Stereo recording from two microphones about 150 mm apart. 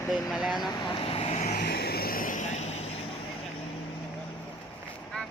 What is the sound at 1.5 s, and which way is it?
Vehicle, 90° left.